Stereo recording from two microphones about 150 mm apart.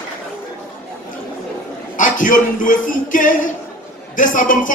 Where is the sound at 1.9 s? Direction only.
60° left (ahead or behind).